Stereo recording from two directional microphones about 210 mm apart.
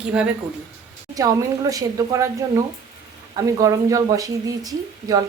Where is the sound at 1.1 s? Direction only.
15° right (ahead or behind).